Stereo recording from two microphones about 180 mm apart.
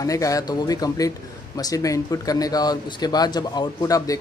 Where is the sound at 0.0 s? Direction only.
20° left (ahead or behind).